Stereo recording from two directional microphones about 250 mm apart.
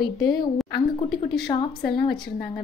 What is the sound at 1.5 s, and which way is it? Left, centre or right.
Speech, centre.